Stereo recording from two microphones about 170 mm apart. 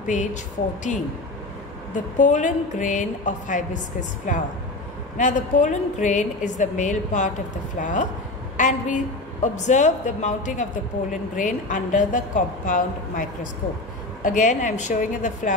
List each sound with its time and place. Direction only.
0.0 s a woman's voice: 45° left (ahead or behind)
2.1 s a woman's voice: 50° left (ahead or behind)